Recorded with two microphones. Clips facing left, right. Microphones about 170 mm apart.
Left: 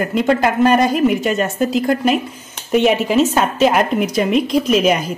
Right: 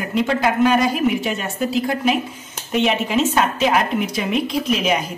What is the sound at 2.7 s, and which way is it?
Speech, 50° left (ahead or behind).